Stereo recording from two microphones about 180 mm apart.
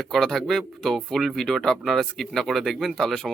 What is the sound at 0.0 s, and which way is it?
A man's voice, centre (ahead or behind).